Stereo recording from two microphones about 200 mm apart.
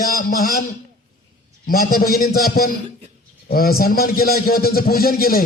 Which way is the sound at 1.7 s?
45° left (ahead or behind).